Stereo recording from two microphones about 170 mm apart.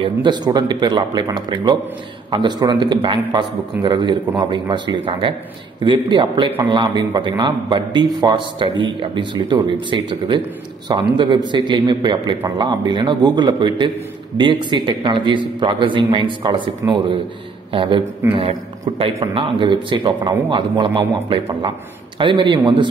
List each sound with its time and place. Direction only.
0.0 s a man's voice: 25° right (ahead or behind)